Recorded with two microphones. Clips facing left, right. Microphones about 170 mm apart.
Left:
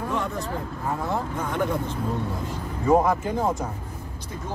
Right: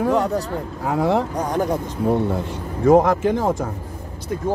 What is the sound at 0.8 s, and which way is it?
Speech, 85° right.